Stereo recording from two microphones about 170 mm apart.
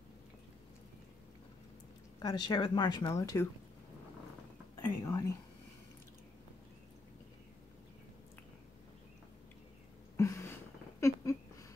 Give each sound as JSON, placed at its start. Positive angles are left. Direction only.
{"t": 2.2, "sound": "speech", "side_deg": 25}
{"t": 4.8, "sound": "whispering", "side_deg": 15}
{"t": 10.1, "sound": "a sound", "side_deg": 15}